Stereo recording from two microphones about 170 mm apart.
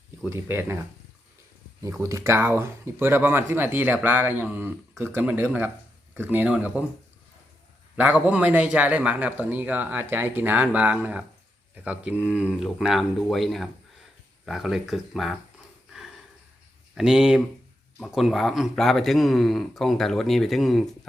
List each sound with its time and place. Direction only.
0.3 s speech: 15° right (ahead or behind)
1.8 s speech: 15° right (ahead or behind)
7.9 s speech: 10° right (ahead or behind)
16.9 s speech: 5° right (ahead or behind)